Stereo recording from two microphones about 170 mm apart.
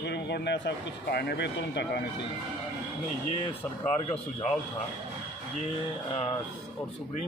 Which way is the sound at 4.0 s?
40° left (ahead or behind).